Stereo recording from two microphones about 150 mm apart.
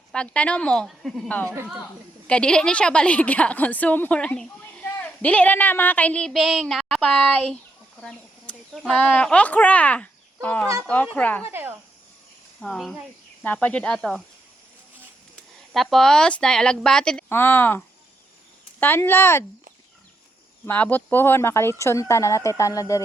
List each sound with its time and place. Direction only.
0.1 s a woman's voice: 5° left (ahead or behind)
8.0 s a sound: 5° left (ahead or behind)
8.8 s a woman's voice: 5° left (ahead or behind)
11.4 s speech: 15° right (ahead or behind)
12.5 s speech: centre (ahead or behind)
13.4 s a woman's voice: 10° left (ahead or behind)
15.7 s a woman's voice: centre (ahead or behind); by 19.5 s 15° left (ahead or behind)
20.7 s a woman's voice: 10° left (ahead or behind)